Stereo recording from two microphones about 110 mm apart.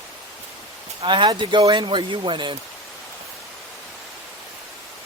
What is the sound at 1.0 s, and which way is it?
Speech, 50° right (ahead or behind).